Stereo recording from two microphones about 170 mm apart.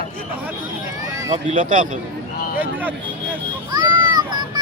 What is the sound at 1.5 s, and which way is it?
Speech, 50° right (ahead or behind).